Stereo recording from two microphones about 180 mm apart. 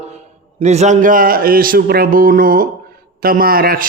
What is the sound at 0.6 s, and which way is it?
Speech, 40° right (ahead or behind).